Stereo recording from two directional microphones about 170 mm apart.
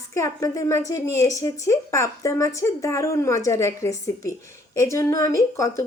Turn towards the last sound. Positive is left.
turn(degrees=20)  # may be behind; listen again after turning